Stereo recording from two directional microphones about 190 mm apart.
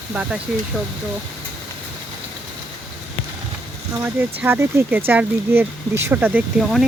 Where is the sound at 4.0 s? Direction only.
10° right (ahead or behind).